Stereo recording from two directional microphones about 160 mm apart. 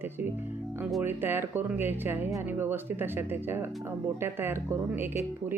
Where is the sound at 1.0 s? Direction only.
15° right (ahead or behind).